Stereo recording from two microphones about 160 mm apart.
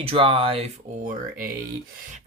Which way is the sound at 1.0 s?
55° right (ahead or behind).